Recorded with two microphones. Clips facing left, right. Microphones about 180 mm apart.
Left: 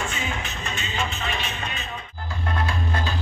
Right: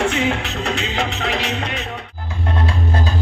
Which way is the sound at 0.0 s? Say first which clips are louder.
Right 11 dB; 80° right.